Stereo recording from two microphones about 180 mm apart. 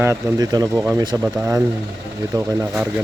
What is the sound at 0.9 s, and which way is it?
Speech, 20° right (ahead or behind).